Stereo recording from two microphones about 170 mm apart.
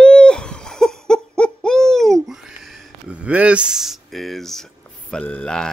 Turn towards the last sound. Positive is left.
turn(degrees=5)  # may be behind; listen again after turning